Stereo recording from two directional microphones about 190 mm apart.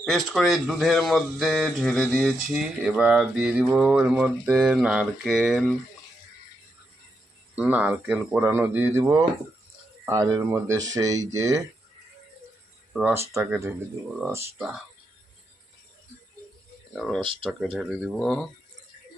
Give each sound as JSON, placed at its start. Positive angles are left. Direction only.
{"t": 0.0, "sound": "speech", "side_deg": 0}
{"t": 7.5, "sound": "speech", "side_deg": -10}
{"t": 12.9, "sound": "speech", "side_deg": 0}
{"t": 13.3, "sound": "speech", "side_deg": -10}
{"t": 16.9, "sound": "speech", "side_deg": 5}
{"t": 17.2, "sound": "speech", "side_deg": -25}
{"t": 17.4, "sound": "speech", "side_deg": 0}